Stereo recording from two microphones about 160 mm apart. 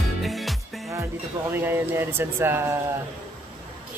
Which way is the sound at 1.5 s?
15° right (ahead or behind).